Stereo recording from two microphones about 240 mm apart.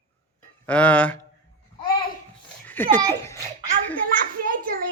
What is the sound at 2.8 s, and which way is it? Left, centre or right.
Speech, centre.